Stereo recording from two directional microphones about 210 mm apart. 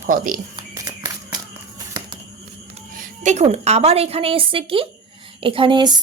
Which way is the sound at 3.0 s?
35° right (ahead or behind).